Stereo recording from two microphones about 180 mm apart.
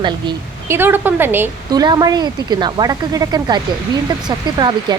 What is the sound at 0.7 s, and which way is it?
A woman's voice, 10° right (ahead or behind).